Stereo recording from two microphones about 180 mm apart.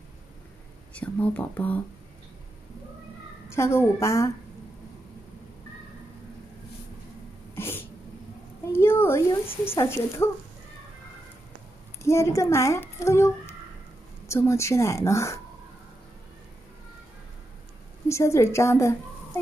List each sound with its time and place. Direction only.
0.9 s a woman's voice: 10° left (ahead or behind)
3.4 s a woman's voice: 15° left (ahead or behind)
7.5 s cat: 10° left (ahead or behind)
8.7 s a sound: 10° left (ahead or behind)
9.7 s a woman's voice: 15° left (ahead or behind)
12.0 s a child's voice: 15° left (ahead or behind)
18.0 s a woman's voice: 15° left (ahead or behind)